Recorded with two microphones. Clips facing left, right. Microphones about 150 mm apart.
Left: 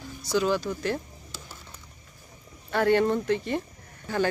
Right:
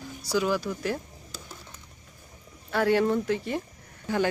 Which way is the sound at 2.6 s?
5° right (ahead or behind).